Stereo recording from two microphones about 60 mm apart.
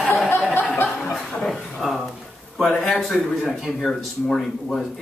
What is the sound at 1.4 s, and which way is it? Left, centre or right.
A man's voice, centre.